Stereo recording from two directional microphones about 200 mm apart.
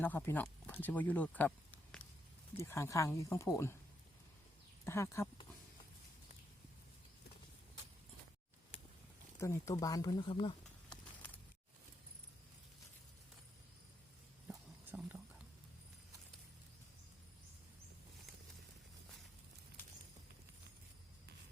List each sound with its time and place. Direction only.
0.0 s speech: 10° left (ahead or behind)
4.9 s speech: 15° left (ahead or behind)
9.4 s speech: 15° left (ahead or behind)
14.8 s a sound: 10° right (ahead or behind)